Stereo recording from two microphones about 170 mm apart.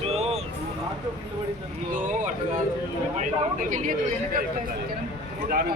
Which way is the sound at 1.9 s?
50° right (ahead or behind).